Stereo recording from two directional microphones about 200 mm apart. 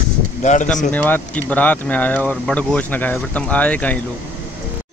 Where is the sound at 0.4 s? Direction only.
35° left (ahead or behind).